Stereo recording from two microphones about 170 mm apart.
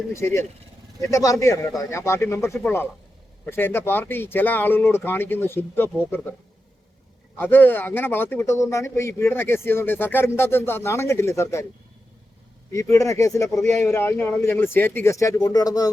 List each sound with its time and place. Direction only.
0.1 s a man's voice: 15° left (ahead or behind)
7.3 s a man's voice: 10° left (ahead or behind)
12.7 s a man's voice: 15° left (ahead or behind)